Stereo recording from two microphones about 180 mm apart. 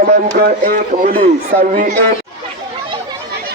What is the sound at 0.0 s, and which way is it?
Speech, 60° right (ahead or behind).